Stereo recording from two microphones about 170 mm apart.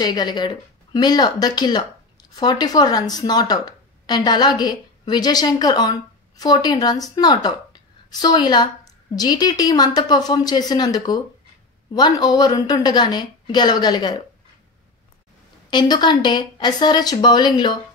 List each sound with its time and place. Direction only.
0.0 s speech: 25° left (ahead or behind)
15.7 s speech: 25° left (ahead or behind)